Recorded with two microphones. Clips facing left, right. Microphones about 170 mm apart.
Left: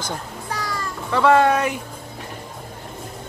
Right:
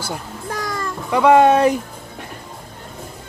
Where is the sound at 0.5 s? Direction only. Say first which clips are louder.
Right 3 dB; 50° right (ahead or behind).